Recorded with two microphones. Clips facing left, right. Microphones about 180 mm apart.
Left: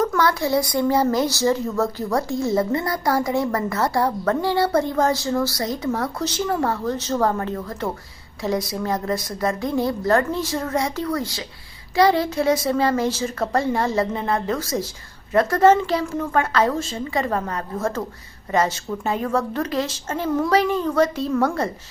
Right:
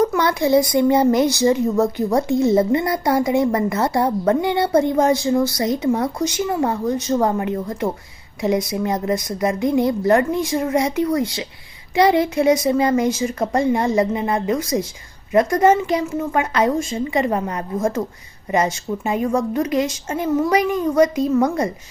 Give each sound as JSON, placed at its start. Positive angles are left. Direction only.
{"t": 0.0, "sound": "a woman's voice", "side_deg": -20}